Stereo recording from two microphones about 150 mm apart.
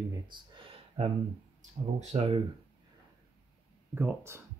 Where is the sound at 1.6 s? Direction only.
45° right (ahead or behind).